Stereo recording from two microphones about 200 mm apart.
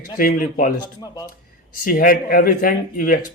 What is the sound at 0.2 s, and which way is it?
Speech, 45° left (ahead or behind).